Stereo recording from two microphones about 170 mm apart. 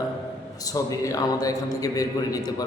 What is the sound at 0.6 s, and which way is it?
A man's voice, 20° left (ahead or behind).